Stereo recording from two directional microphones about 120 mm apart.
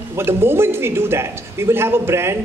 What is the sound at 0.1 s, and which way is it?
A man's voice, 20° right (ahead or behind).